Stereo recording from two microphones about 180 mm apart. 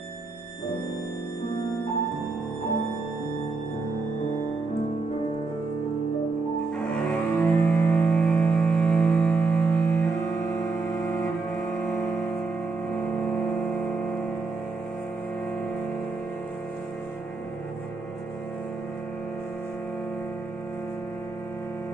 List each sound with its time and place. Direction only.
7.0 s music: 5° left (ahead or behind)